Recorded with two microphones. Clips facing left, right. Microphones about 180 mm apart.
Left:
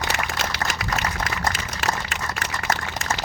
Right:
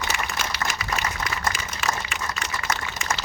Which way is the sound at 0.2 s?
65° left (ahead or behind).